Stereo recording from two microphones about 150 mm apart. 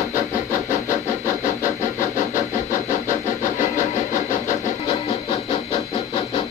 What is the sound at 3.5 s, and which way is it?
Vehicle, 60° left (ahead or behind).